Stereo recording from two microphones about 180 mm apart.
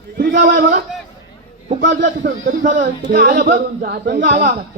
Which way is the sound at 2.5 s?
50° right (ahead or behind).